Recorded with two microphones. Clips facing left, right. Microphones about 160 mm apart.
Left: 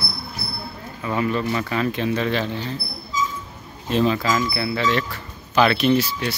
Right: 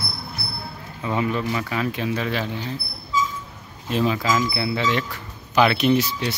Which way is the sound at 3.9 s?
10° right (ahead or behind).